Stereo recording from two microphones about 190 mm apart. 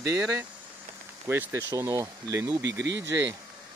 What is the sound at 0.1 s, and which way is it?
Speech, 15° right (ahead or behind).